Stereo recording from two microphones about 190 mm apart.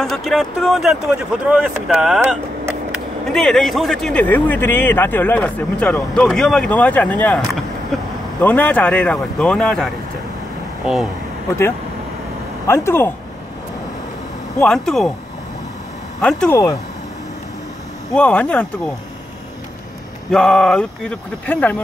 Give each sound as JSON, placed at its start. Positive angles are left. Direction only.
{"t": 0.0, "sound": "a man's voice", "side_deg": 0}
{"t": 12.6, "sound": "a man's voice", "side_deg": 15}
{"t": 14.6, "sound": "speech", "side_deg": 5}
{"t": 16.2, "sound": "speech", "side_deg": 5}
{"t": 18.1, "sound": "a man's voice", "side_deg": 5}
{"t": 20.2, "sound": "speech", "side_deg": 5}